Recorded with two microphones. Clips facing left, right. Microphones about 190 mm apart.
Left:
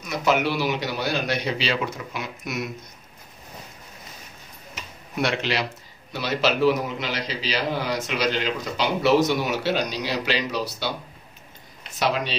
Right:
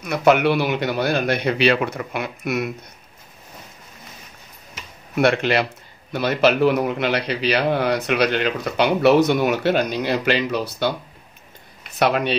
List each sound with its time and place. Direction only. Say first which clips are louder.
0.0 s a man's voice: right 6 dB; 60° right (ahead or behind)
5.1 s a man's voice: right 7 dB; 55° right (ahead or behind)
11.9 s a man's voice: right 5 dB; 60° right (ahead or behind)